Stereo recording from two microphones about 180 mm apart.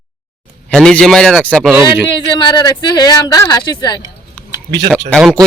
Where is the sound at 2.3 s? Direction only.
25° left (ahead or behind).